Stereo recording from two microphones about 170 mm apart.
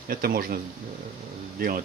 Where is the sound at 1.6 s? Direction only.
60° right (ahead or behind).